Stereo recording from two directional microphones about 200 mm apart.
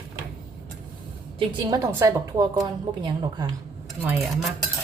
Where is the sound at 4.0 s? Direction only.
5° right (ahead or behind).